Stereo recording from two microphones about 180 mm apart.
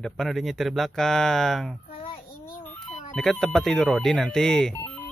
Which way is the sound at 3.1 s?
5° left (ahead or behind).